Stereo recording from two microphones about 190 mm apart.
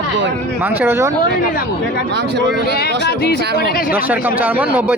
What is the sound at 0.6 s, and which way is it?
Speech, 10° right (ahead or behind).